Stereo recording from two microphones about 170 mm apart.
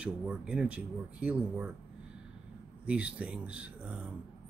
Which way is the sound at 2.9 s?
5° right (ahead or behind).